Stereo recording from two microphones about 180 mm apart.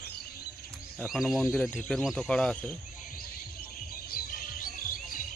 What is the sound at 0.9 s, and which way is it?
Speech, centre (ahead or behind).